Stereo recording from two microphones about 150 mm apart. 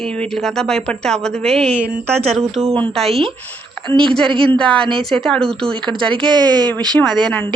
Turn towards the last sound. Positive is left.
turn(degrees=10)  # may be behind; listen again after turning